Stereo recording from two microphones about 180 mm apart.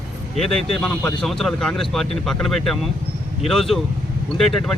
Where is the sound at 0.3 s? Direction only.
Centre (ahead or behind).